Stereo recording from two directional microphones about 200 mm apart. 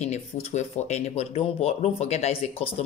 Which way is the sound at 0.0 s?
35° left (ahead or behind).